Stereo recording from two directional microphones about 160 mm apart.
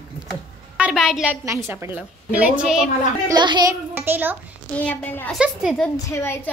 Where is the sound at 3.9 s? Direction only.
10° right (ahead or behind).